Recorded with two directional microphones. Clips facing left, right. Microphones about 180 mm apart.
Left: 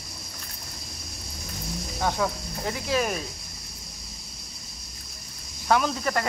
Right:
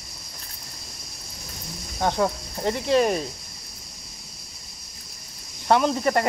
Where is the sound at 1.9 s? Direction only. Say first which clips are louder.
Right 4 dB; 20° right (ahead or behind).